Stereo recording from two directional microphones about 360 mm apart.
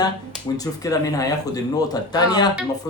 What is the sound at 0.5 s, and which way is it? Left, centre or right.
Speech, centre.